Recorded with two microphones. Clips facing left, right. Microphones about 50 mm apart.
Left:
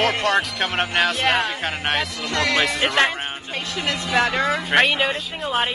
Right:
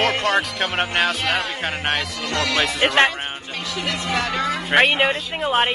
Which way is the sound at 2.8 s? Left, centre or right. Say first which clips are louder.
Right 5 dB; right.